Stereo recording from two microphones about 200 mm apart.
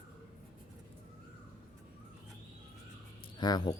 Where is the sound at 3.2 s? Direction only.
20° left (ahead or behind).